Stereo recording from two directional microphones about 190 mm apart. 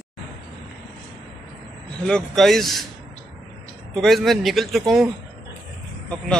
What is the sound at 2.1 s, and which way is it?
Speech, 5° left (ahead or behind).